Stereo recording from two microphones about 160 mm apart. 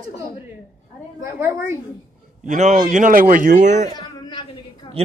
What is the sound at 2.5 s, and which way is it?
Speech, 55° right (ahead or behind).